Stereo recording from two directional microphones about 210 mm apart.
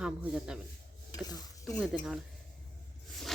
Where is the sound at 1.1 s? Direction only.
20° left (ahead or behind).